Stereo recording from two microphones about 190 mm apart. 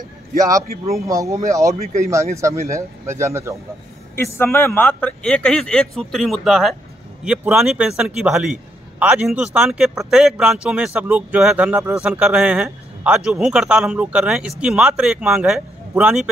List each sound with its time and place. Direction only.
0.4 s speech: 20° right (ahead or behind)
4.2 s a man's voice: 15° left (ahead or behind); by 16.3 s 5° right (ahead or behind)